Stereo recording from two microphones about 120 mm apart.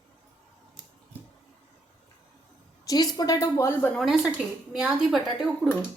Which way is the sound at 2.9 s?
35° left (ahead or behind).